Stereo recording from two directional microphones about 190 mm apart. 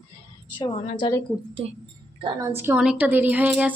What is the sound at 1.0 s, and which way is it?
Speech, 25° left (ahead or behind).